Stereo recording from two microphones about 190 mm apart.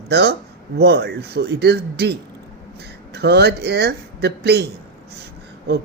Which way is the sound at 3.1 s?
60° right (ahead or behind).